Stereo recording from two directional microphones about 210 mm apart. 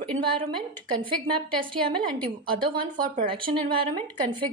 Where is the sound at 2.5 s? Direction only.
25° right (ahead or behind).